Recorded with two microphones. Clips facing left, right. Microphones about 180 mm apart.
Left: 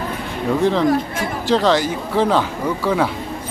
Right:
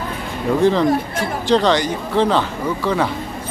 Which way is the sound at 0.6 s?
Centre (ahead or behind).